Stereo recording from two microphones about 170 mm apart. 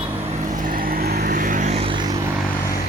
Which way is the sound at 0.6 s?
55° right (ahead or behind).